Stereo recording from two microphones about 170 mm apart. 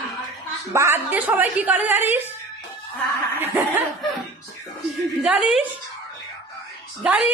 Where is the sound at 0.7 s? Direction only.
15° right (ahead or behind).